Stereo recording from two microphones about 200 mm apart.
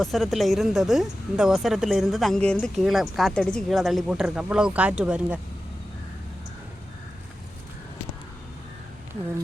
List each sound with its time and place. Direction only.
0.0 s speech: centre (ahead or behind)